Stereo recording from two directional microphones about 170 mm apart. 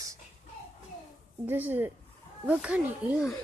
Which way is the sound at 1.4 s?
10° right (ahead or behind).